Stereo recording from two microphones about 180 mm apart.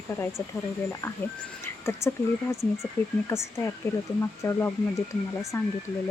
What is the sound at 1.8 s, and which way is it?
Speech, 15° left (ahead or behind).